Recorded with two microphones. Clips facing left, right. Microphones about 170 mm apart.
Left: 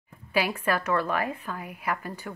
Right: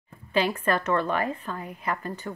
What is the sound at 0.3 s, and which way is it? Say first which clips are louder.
A woman's voice: right 2 dB; 10° left (ahead or behind).